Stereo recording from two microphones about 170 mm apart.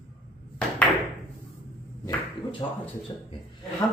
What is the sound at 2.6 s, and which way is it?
Speech, 25° left (ahead or behind).